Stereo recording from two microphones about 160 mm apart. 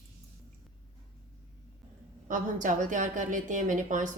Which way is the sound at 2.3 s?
55° right (ahead or behind).